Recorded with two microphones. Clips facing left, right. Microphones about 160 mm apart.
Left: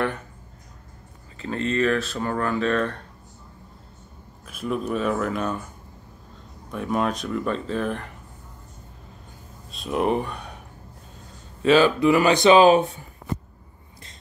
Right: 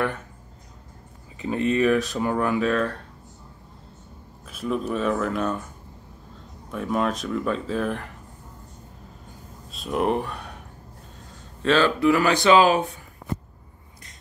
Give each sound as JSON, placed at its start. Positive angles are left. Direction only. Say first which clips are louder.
{"t": 1.4, "sound": "speech", "louder": "right 2 dB", "side_deg": -15}
{"t": 4.5, "sound": "speech", "louder": "even", "side_deg": 0}
{"t": 6.7, "sound": "speech", "louder": "even", "side_deg": 0}
{"t": 9.7, "sound": "speech", "louder": "left 1 dB", "side_deg": 0}
{"t": 11.6, "sound": "speech", "louder": "left 2 dB", "side_deg": 10}